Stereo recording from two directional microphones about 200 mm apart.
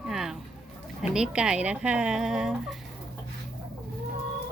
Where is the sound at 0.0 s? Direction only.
Centre (ahead or behind).